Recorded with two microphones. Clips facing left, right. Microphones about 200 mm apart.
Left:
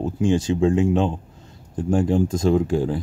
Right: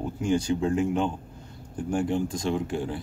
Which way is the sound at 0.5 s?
25° left (ahead or behind).